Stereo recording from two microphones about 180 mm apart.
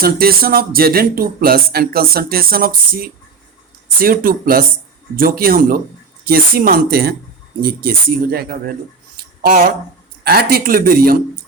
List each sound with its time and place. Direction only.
0.0 s speech: 55° right (ahead or behind)